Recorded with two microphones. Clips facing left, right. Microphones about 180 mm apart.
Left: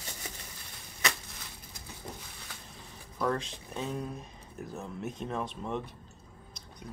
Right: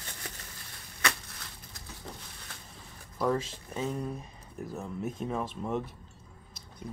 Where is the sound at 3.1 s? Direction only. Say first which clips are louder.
Right 2 dB; 5° right (ahead or behind).